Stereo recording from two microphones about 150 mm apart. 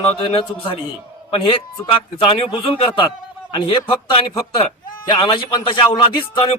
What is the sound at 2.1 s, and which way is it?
Speech, 35° left (ahead or behind).